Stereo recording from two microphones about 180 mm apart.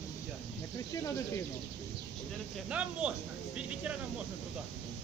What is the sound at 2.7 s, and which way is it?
Speech, 5° right (ahead or behind).